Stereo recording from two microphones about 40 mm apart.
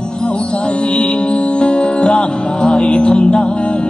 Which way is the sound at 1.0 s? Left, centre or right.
Left.